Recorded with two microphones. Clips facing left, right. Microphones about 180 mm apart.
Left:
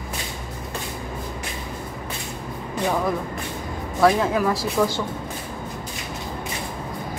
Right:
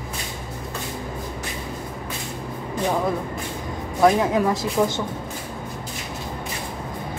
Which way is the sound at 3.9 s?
20° right (ahead or behind).